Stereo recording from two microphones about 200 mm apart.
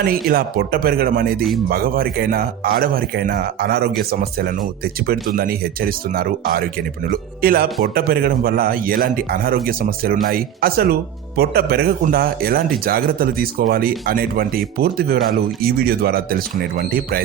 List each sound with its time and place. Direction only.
0.0 s a man's voice: 45° right (ahead or behind)